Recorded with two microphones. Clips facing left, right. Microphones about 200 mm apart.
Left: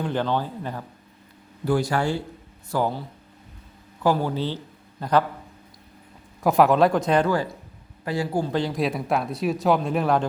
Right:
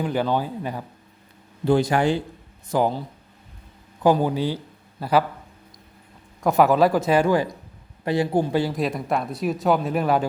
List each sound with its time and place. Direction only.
0.0 s speech: 10° right (ahead or behind)
4.0 s a man's voice: 15° right (ahead or behind)
6.4 s speech: centre (ahead or behind); by 8.5 s 20° right (ahead or behind)
8.5 s speech: 5° right (ahead or behind)